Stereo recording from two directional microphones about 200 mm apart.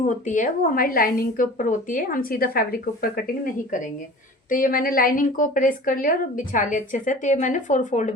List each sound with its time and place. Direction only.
0.0 s a woman's voice: 40° left (ahead or behind)